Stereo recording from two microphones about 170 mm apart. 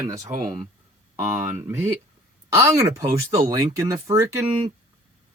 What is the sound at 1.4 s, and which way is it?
Speech, 15° right (ahead or behind).